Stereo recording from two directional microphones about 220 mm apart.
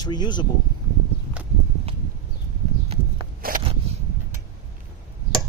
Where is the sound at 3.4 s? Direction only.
40° right (ahead or behind).